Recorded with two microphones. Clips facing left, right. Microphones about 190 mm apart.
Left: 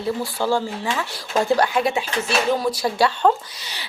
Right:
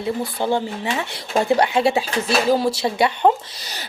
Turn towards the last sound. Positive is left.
turn(degrees=-40)  # may be behind; listen again after turning